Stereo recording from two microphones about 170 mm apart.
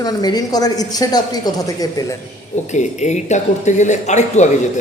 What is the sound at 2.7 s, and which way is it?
Speech, 45° left (ahead or behind).